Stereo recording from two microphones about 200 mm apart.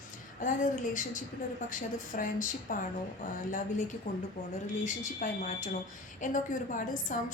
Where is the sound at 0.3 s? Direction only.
40° left (ahead or behind).